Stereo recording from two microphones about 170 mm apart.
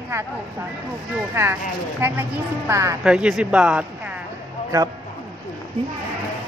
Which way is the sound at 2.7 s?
15° right (ahead or behind).